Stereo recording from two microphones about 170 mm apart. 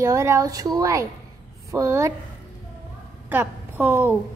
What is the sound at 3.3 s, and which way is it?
Speech, 10° right (ahead or behind).